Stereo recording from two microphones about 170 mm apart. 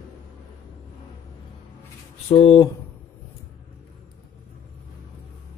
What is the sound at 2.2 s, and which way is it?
Speech, 40° left (ahead or behind).